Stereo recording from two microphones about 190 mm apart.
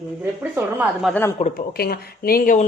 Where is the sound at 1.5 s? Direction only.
55° left (ahead or behind).